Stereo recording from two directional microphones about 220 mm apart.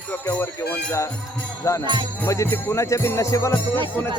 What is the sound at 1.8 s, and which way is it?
Speech, 20° right (ahead or behind).